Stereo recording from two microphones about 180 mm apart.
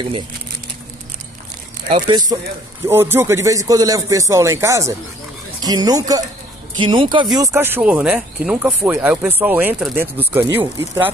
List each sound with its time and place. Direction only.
2.0 s speech: 20° right (ahead or behind)
7.3 s speech: 15° right (ahead or behind)